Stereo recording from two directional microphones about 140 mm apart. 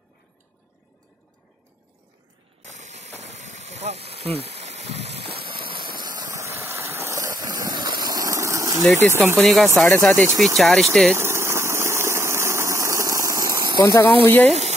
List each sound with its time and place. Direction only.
2.6 s a sound: 60° right (ahead or behind); by 8.8 s 25° right (ahead or behind)
9.1 s speech: 15° right (ahead or behind)
9.4 s speech: centre (ahead or behind)
11.1 s engine: 15° right (ahead or behind)
13.7 s speech: 25° left (ahead or behind)
14.2 s speech: 15° left (ahead or behind)